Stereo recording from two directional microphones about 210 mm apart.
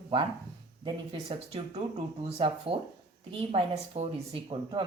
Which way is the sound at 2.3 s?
30° right (ahead or behind).